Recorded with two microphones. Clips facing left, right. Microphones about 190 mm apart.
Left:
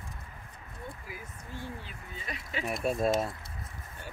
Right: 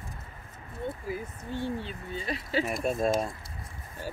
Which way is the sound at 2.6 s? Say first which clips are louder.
Left 1 dB; centre (ahead or behind).